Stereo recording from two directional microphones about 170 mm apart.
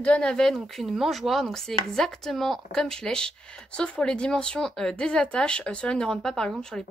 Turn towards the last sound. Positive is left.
turn(degrees=5)  # may be behind; listen again after turning